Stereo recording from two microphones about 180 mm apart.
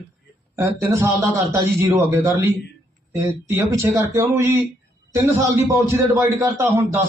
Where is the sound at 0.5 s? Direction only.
15° right (ahead or behind).